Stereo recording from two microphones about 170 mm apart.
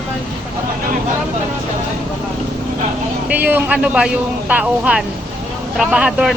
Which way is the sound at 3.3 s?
10° right (ahead or behind).